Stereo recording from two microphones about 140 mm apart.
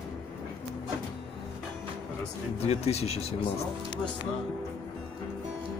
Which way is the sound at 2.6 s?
50° left (ahead or behind).